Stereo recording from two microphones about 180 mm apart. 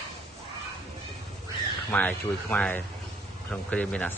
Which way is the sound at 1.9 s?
10° left (ahead or behind).